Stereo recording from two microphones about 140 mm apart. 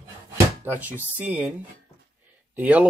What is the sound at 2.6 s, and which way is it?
Speech, 10° right (ahead or behind).